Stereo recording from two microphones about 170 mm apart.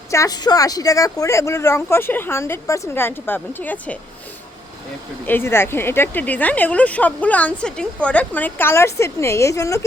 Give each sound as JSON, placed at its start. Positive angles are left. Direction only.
{"t": 0.1, "sound": "speech", "side_deg": 20}
{"t": 5.2, "sound": "speech", "side_deg": 15}